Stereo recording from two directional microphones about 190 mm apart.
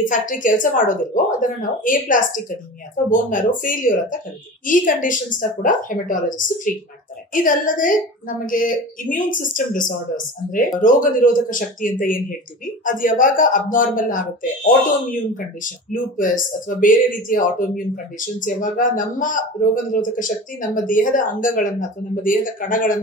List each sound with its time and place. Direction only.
0.1 s speech: 45° left (ahead or behind)